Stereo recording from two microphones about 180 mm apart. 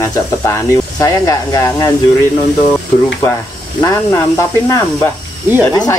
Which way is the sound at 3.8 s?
20° left (ahead or behind).